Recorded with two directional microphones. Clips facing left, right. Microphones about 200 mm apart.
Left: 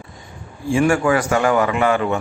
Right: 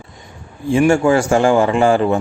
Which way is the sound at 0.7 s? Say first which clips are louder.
Right 4 dB; 25° right (ahead or behind).